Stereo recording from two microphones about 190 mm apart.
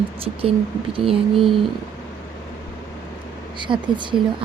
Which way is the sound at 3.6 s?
25° right (ahead or behind).